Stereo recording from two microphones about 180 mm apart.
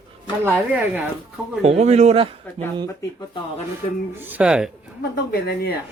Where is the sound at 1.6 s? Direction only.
35° right (ahead or behind).